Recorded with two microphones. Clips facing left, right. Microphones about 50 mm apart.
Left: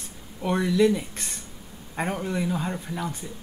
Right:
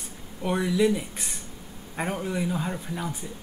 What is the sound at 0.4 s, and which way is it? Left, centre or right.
Speech, centre.